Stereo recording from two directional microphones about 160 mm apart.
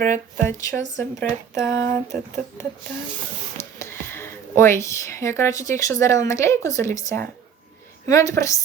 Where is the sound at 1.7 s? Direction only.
20° left (ahead or behind).